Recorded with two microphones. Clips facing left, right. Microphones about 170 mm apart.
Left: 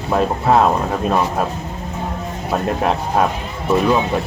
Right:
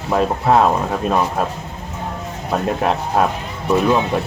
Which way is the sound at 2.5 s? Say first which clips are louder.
Even; centre (ahead or behind).